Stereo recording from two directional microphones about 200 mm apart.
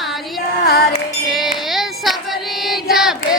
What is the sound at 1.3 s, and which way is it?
Child singing, centre (ahead or behind).